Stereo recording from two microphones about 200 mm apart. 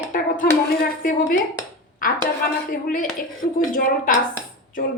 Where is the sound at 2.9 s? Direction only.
45° left (ahead or behind).